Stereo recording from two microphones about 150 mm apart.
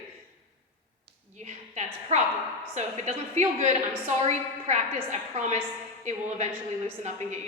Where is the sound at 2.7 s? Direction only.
50° right (ahead or behind).